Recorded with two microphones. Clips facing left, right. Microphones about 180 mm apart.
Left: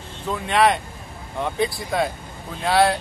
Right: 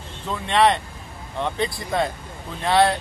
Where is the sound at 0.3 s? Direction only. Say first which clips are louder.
Even; 5° left (ahead or behind).